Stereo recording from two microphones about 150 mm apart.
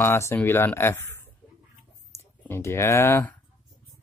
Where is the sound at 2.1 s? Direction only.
15° left (ahead or behind).